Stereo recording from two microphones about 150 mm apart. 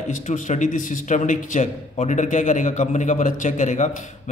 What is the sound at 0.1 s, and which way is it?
A man's voice, 55° left (ahead or behind).